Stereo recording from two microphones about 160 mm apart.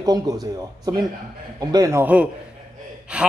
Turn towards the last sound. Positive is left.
turn(degrees=-5)  # may be behind; listen again after turning